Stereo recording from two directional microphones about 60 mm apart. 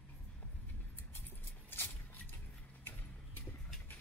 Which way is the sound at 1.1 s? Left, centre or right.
Left.